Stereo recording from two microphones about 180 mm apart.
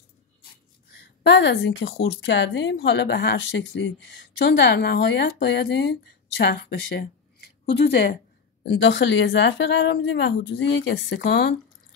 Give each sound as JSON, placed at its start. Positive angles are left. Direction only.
{"t": 0.9, "sound": "a woman's voice", "side_deg": 75}
{"t": 2.2, "sound": "speech", "side_deg": 80}